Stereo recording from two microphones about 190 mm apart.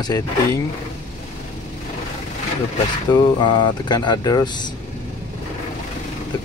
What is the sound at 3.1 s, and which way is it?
Speech, 25° left (ahead or behind).